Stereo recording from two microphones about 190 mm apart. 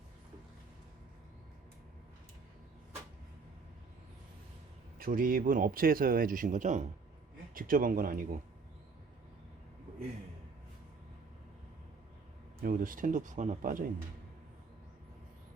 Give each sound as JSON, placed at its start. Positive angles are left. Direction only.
{"t": 4.9, "sound": "speech", "side_deg": -50}
{"t": 12.6, "sound": "speech", "side_deg": -45}